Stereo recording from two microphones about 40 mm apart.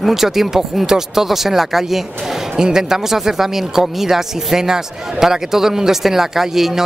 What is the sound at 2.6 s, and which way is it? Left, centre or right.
Speech, centre.